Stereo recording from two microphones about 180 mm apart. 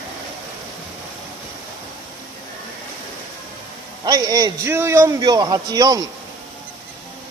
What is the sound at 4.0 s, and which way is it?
A man's voice, 25° right (ahead or behind).